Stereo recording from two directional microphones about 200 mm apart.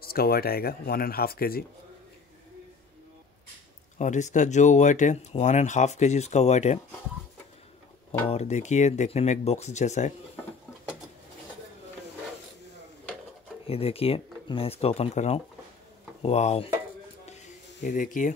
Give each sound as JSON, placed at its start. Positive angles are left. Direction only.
{"t": 0.0, "sound": "speech", "side_deg": 50}
{"t": 4.0, "sound": "speech", "side_deg": 35}
{"t": 8.3, "sound": "speech", "side_deg": 35}
{"t": 13.7, "sound": "speech", "side_deg": 30}
{"t": 17.8, "sound": "speech", "side_deg": 40}